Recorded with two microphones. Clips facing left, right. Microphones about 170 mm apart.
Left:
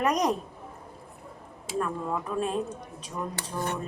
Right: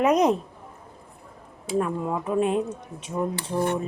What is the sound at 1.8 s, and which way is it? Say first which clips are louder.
Speech: right 2 dB; 20° right (ahead or behind).